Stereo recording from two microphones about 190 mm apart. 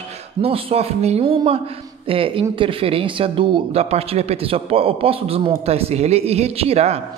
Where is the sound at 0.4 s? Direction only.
30° right (ahead or behind).